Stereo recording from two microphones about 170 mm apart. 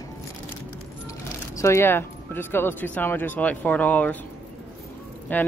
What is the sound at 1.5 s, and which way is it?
Speech, 15° left (ahead or behind).